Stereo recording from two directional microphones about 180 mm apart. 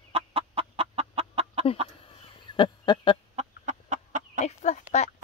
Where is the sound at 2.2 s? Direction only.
25° left (ahead or behind).